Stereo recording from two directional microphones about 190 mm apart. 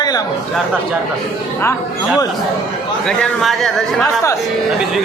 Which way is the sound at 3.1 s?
5° left (ahead or behind).